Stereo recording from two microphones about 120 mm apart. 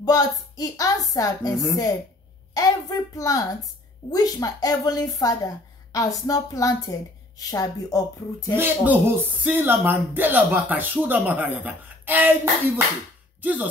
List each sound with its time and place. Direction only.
0.0 s a woman's voice: 30° left (ahead or behind)
2.5 s a woman's voice: 30° left (ahead or behind)
8.5 s speech: 15° right (ahead or behind)